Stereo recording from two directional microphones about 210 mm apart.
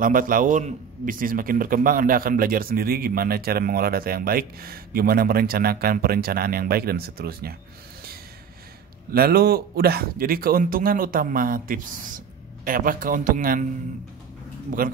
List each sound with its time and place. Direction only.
0.0 s a man's voice: 40° right (ahead or behind)
9.1 s a man's voice: 45° right (ahead or behind)
14.7 s a man's voice: 40° right (ahead or behind)